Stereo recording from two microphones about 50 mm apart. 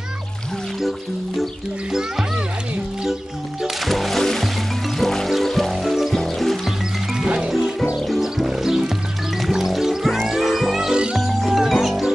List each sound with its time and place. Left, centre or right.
1.9 s music: centre
3.6 s music: centre
7.2 s music: centre
8.1 s music: centre
11.1 s music: centre